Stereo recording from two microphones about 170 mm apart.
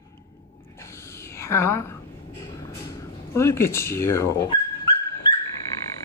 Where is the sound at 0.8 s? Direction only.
15° left (ahead or behind).